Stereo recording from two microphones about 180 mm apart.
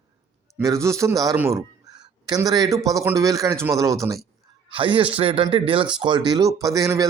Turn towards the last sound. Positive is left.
turn(degrees=-20)  # may be behind; listen again after turning